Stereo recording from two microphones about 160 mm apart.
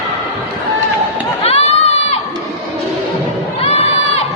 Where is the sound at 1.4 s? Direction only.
40° left (ahead or behind).